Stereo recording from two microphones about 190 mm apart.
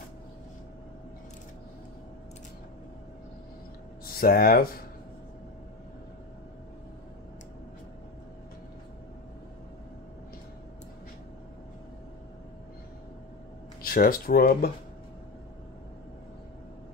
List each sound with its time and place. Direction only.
4.0 s speech: 50° left (ahead or behind)
13.8 s speech: 50° left (ahead or behind)